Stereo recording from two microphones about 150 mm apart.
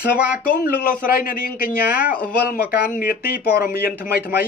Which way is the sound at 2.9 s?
80° left.